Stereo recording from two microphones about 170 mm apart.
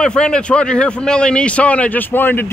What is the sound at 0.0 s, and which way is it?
A man's voice, 5° left (ahead or behind).